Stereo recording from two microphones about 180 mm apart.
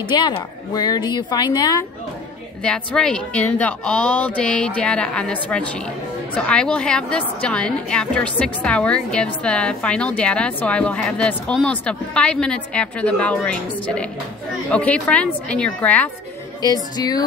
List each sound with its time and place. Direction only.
0.1 s speech: 25° left (ahead or behind)
2.6 s a woman's voice: 5° left (ahead or behind)
16.6 s speech: 20° left (ahead or behind)